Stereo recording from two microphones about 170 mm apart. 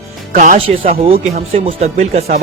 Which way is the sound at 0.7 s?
35° right (ahead or behind).